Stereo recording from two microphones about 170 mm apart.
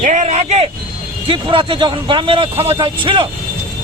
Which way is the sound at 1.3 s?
30° right (ahead or behind).